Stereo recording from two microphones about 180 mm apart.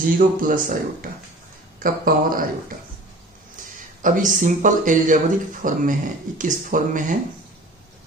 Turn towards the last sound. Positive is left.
turn(degrees=-45)  # may be behind; listen again after turning